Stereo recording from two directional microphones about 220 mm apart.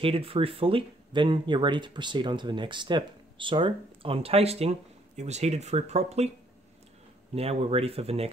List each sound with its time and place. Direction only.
0.0 s speech: 25° right (ahead or behind)
7.3 s speech: 25° right (ahead or behind)